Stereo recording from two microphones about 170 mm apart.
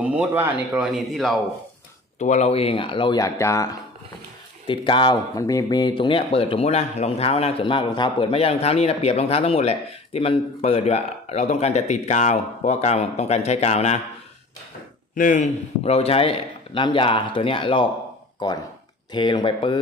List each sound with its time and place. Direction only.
0.0 s speech: 10° right (ahead or behind)
2.1 s speech: 45° left (ahead or behind); by 3.7 s 15° left (ahead or behind)
4.6 s speech: 30° left (ahead or behind)
15.1 s speech: 50° left (ahead or behind); by 19.8 s 30° left (ahead or behind)